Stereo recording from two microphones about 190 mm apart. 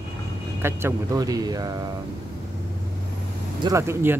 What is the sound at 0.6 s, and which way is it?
Speech, 15° right (ahead or behind).